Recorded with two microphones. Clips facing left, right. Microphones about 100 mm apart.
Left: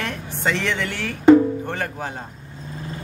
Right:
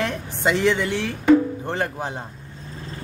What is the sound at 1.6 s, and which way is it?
Music, 20° right (ahead or behind).